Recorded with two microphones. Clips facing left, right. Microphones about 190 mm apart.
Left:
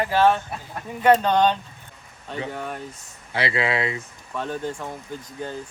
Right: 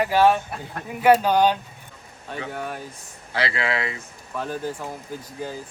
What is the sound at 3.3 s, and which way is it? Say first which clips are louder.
Speech: left 2 dB; 20° left (ahead or behind).